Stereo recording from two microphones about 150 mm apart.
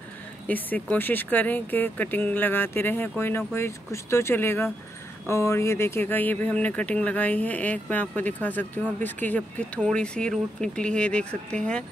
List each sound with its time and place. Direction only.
0.5 s speech: 10° left (ahead or behind)